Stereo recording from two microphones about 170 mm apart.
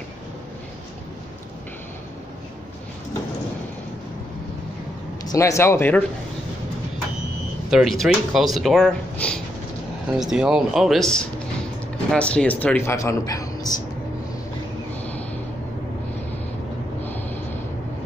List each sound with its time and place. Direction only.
5.2 s speech: 20° left (ahead or behind)
7.7 s speech: centre (ahead or behind); by 13.8 s 20° left (ahead or behind)
17.0 s snort: 10° left (ahead or behind)